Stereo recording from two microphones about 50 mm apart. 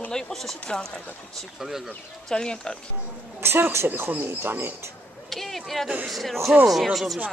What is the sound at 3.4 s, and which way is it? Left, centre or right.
Speech, right.